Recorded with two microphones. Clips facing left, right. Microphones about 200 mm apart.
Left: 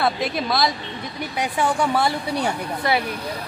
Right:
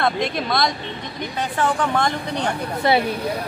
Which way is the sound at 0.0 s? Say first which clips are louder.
Right 1 dB; 5° left (ahead or behind).